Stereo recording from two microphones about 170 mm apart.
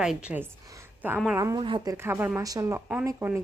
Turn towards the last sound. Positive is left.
turn(degrees=-15)  # may be behind; listen again after turning